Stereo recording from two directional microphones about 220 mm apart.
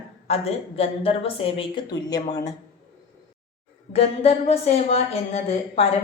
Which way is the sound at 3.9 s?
25° left (ahead or behind).